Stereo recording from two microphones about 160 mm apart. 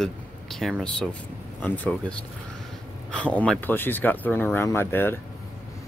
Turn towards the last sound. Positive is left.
turn(degrees=15)  # may be behind; listen again after turning